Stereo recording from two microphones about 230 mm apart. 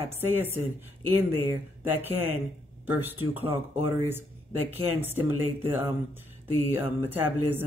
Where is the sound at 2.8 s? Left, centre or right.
Centre.